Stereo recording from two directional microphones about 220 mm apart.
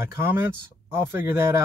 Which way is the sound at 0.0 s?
10° right (ahead or behind).